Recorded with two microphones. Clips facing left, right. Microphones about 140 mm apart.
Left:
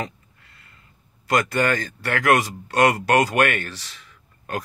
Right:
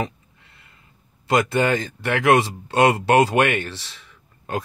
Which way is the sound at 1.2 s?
20° right (ahead or behind).